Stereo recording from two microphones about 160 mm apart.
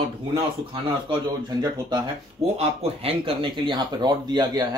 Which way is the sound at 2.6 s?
40° right (ahead or behind).